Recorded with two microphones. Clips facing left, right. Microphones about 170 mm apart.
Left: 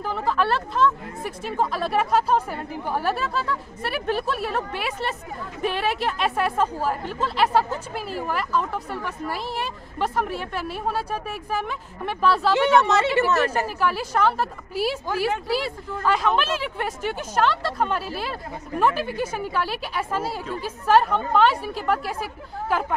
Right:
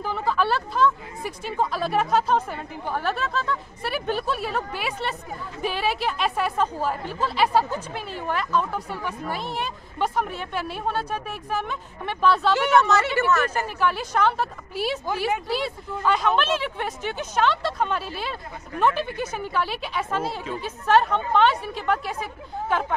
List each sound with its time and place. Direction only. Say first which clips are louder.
0.0 s speech: left 1 dB; centre (ahead or behind)
12.8 s speech: left 1 dB; 25° left (ahead or behind)
13.7 s speech: even; centre (ahead or behind)